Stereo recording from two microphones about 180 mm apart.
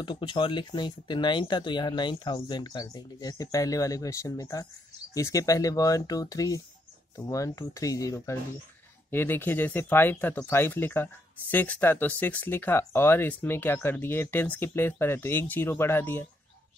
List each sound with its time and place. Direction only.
0.0 s speech: 25° left (ahead or behind)